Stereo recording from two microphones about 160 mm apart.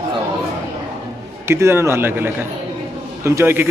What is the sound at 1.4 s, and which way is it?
A man's voice, 15° right (ahead or behind).